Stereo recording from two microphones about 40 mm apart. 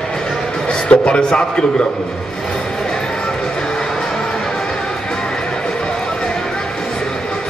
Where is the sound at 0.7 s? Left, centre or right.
Left.